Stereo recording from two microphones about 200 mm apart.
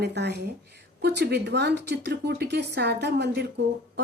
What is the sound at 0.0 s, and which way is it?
Speech, 55° right (ahead or behind).